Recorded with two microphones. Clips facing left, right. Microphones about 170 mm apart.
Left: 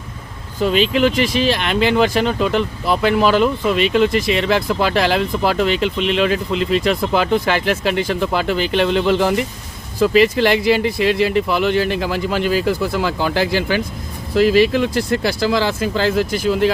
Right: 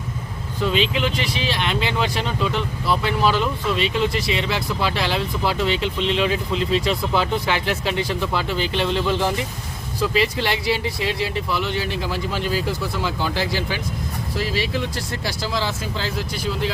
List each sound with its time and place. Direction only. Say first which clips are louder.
0.6 s speech: left 6 dB; 50° left (ahead or behind)
3.0 s speech: left 8 dB; 75° left (ahead or behind); by 11.1 s 55° left (ahead or behind)
11.1 s speech: left 8 dB; 65° left (ahead or behind)